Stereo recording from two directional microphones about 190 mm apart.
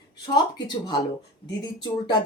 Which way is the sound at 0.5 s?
20° left (ahead or behind).